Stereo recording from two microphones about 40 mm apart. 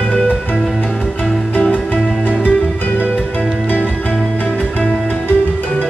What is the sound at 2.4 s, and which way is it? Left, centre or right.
Music, left.